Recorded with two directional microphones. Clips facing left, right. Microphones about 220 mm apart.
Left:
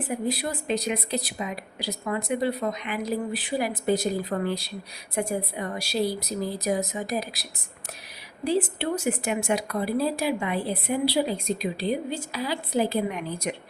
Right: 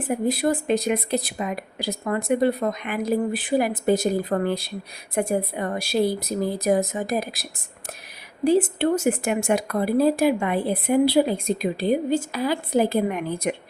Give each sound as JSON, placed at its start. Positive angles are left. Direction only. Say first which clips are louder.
{"t": 0.0, "sound": "speech", "louder": "right 6 dB", "side_deg": -50}
{"t": 8.4, "sound": "speech", "louder": "right 6 dB", "side_deg": -45}